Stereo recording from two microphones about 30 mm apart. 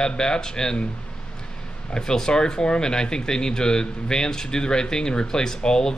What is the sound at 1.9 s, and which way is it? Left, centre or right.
Speech, left.